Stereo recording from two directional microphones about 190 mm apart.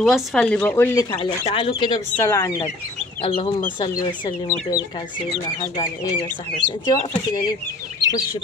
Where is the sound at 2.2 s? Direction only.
15° left (ahead or behind).